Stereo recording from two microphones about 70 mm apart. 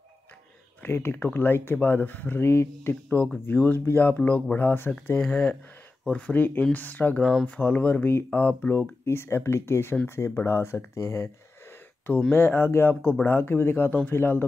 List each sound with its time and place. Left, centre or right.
0.8 s speech: left
3.4 s speech: left
8.7 s speech: left
12.3 s speech: left